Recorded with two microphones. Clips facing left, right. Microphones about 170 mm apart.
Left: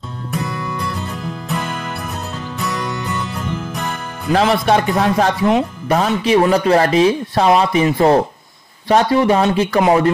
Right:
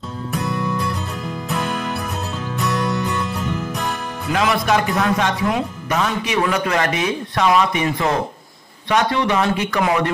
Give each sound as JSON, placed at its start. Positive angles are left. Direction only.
{"t": 0.3, "sound": "music", "side_deg": 0}
{"t": 4.3, "sound": "speech", "side_deg": 30}
{"t": 9.4, "sound": "speech", "side_deg": 30}